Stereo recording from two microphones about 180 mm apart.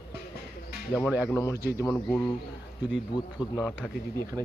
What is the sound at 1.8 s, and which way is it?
Speech, 10° left (ahead or behind).